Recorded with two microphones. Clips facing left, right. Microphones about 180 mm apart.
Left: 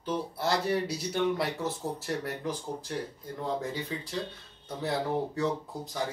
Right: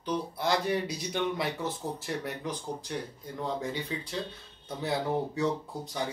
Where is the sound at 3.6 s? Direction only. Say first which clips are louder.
Even; centre (ahead or behind).